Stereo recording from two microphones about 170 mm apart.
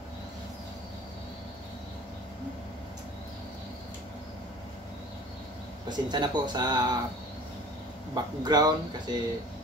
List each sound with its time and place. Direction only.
5.9 s speech: 25° right (ahead or behind)
8.1 s speech: 25° right (ahead or behind)